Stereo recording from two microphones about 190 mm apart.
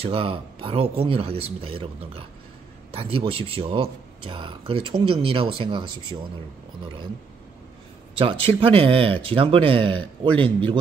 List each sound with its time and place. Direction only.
0.0 s speech: 30° right (ahead or behind)
8.2 s speech: 30° right (ahead or behind)